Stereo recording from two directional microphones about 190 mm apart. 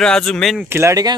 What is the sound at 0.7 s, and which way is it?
Speech, 15° right (ahead or behind).